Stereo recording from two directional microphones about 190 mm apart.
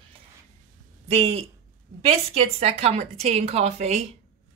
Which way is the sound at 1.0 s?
30° right (ahead or behind).